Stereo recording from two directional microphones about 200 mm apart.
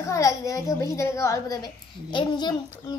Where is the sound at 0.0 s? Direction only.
15° left (ahead or behind).